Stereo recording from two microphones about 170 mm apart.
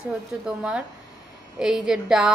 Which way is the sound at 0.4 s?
5° right (ahead or behind).